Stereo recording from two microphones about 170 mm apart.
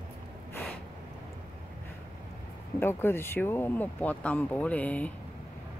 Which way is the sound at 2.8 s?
15° left (ahead or behind).